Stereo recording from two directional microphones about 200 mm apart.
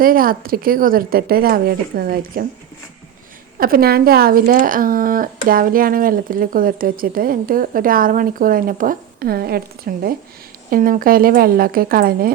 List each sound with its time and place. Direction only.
0.0 s speech: 45° right (ahead or behind)
3.6 s speech: 50° right (ahead or behind)